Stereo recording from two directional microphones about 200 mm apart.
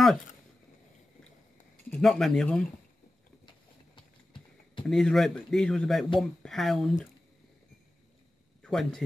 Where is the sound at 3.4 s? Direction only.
25° left (ahead or behind).